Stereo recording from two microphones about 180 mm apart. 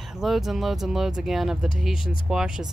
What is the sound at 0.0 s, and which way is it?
Speech, centre (ahead or behind).